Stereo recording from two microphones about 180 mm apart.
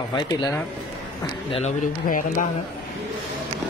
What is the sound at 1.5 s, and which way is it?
Speech, 40° left (ahead or behind).